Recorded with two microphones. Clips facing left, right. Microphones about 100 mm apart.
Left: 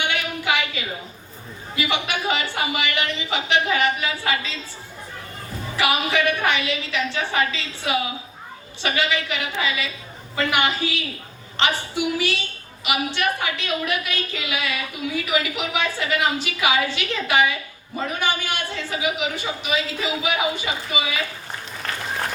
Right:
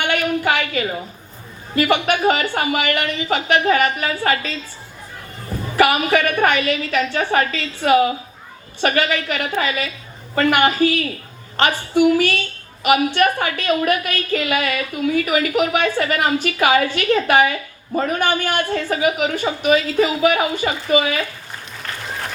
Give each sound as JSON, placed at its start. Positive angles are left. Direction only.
{"t": 0.0, "sound": "a sound", "side_deg": -50}
{"t": 1.7, "sound": "a woman's voice", "side_deg": -50}
{"t": 5.7, "sound": "a woman's voice", "side_deg": -50}